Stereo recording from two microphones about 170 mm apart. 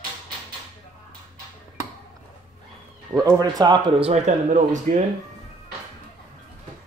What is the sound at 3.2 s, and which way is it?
Speech, 20° right (ahead or behind).